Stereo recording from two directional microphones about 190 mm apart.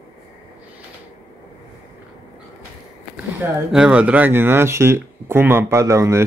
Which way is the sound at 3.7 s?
5° right (ahead or behind).